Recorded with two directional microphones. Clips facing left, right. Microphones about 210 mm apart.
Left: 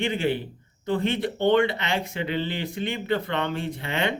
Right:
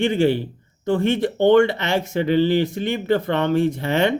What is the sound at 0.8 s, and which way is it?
Speech, 45° right (ahead or behind).